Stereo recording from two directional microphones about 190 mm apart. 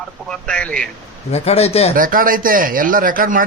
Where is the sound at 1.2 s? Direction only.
35° left (ahead or behind).